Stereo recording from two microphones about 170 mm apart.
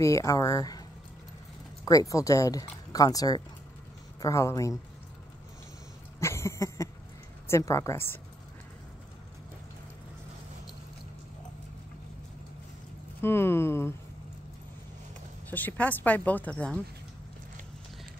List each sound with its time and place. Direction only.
0.0 s speech: 20° left (ahead or behind)
1.9 s speech: 20° left (ahead or behind)
6.1 s a sound: 15° left (ahead or behind)
7.4 s speech: 15° left (ahead or behind)
13.2 s speech: 15° left (ahead or behind)
15.5 s speech: 10° left (ahead or behind)